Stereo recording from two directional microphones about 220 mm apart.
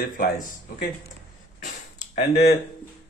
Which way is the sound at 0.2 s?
40° left (ahead or behind).